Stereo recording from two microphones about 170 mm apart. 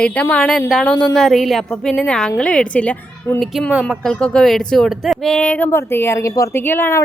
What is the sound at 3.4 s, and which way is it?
A woman's voice, centre (ahead or behind).